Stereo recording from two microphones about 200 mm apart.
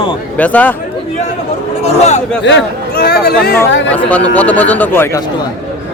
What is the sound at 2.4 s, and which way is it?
A man's voice, 55° left (ahead or behind).